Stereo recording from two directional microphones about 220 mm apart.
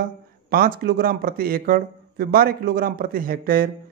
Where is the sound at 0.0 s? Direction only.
40° right (ahead or behind).